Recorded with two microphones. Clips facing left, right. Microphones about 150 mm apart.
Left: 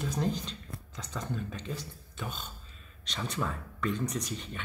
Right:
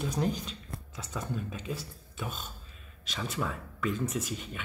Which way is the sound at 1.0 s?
5° right (ahead or behind).